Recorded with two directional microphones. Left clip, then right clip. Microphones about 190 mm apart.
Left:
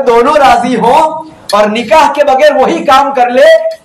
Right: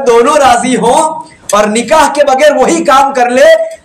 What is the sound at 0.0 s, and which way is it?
Speech, 20° right (ahead or behind).